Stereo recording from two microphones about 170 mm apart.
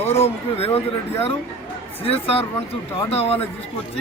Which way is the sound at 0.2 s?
35° left (ahead or behind).